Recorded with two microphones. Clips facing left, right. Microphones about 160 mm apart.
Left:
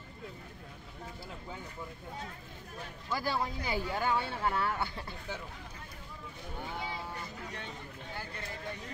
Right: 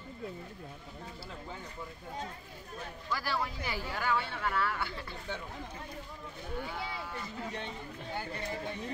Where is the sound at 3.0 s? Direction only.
20° left (ahead or behind).